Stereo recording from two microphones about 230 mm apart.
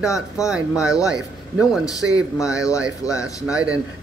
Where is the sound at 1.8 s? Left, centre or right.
Centre.